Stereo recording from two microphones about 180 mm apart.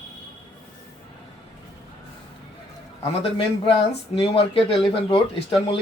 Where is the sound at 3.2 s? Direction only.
30° left (ahead or behind).